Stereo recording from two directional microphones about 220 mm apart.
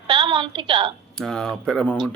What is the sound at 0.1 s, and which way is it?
Speech, 20° right (ahead or behind).